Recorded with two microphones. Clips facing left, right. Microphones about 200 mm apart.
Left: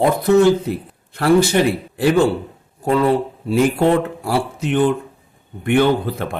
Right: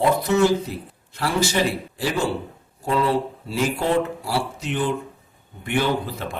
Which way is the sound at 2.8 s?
55° left (ahead or behind).